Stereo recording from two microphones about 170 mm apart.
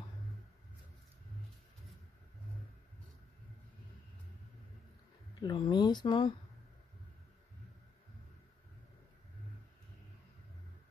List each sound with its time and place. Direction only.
5.4 s speech: 25° left (ahead or behind)